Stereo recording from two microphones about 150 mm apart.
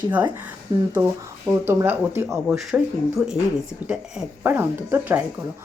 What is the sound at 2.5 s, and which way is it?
A woman's voice, centre (ahead or behind).